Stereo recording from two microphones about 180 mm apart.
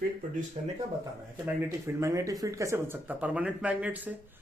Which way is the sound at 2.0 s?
15° right (ahead or behind).